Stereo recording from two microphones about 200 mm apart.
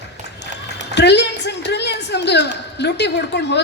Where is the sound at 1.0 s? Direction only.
60° left (ahead or behind).